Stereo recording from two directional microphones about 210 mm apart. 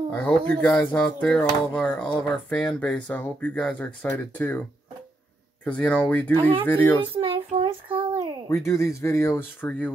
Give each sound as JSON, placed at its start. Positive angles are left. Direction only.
{"t": 0.1, "sound": "speech", "side_deg": 5}
{"t": 5.6, "sound": "speech", "side_deg": 5}
{"t": 7.0, "sound": "a sound", "side_deg": -25}
{"t": 8.6, "sound": "speech", "side_deg": 15}